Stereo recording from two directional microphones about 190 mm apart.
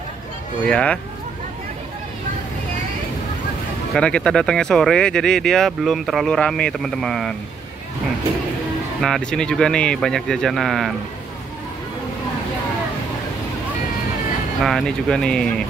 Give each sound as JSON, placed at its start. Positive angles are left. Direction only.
{"t": 0.7, "sound": "speech", "side_deg": 5}
{"t": 3.9, "sound": "speech", "side_deg": 5}
{"t": 9.0, "sound": "speech", "side_deg": 5}
{"t": 14.6, "sound": "speech", "side_deg": 0}